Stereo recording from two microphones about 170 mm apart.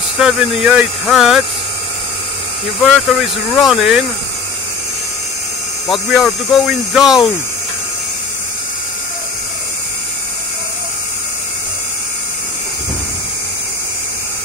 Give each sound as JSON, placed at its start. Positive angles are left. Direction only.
{"t": 0.2, "sound": "speech", "side_deg": -5}
{"t": 2.8, "sound": "speech", "side_deg": 0}
{"t": 5.9, "sound": "speech", "side_deg": 0}